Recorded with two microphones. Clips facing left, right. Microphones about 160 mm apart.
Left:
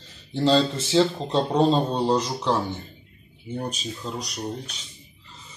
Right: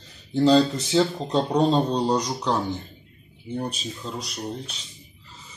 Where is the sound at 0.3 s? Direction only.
15° right (ahead or behind).